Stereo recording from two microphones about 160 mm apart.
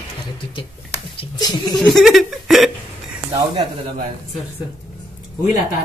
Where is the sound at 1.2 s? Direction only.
25° left (ahead or behind).